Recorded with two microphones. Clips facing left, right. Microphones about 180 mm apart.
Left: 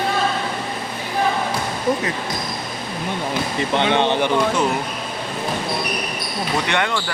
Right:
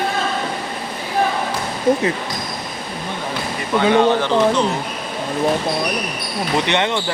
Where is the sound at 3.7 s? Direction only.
25° left (ahead or behind).